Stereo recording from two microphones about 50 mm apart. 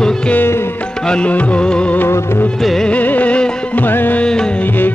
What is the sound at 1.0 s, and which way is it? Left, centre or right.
Music, left.